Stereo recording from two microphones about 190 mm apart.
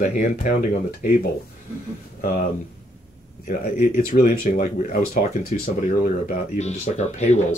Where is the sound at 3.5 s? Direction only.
50° left (ahead or behind).